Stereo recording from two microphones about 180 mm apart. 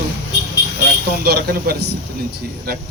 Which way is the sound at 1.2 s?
60° right (ahead or behind).